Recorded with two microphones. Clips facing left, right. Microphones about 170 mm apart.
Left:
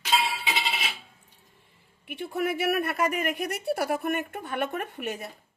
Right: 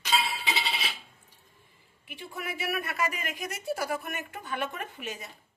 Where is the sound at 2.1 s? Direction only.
60° left (ahead or behind).